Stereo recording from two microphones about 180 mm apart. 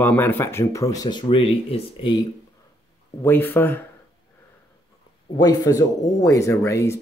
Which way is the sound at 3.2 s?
10° left (ahead or behind).